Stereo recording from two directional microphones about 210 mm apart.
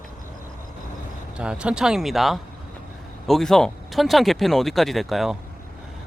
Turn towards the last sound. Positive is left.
turn(degrees=0)  # may be behind; listen again after turning